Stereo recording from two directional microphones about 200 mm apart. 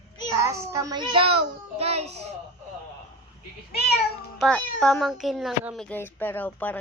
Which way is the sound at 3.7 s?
55° left (ahead or behind).